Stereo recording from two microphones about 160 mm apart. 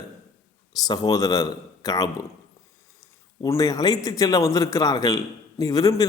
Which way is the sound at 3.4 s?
20° left (ahead or behind).